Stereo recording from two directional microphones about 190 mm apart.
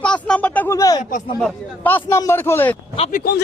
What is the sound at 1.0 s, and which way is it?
Speech, 45° left (ahead or behind).